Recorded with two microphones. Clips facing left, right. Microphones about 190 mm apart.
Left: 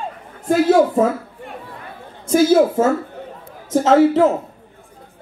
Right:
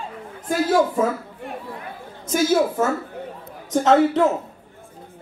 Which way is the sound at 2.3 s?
25° left (ahead or behind).